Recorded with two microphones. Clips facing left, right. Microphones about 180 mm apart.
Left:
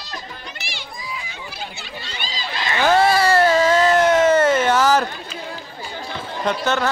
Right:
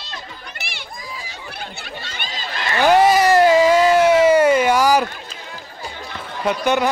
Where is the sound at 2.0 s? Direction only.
60° right (ahead or behind).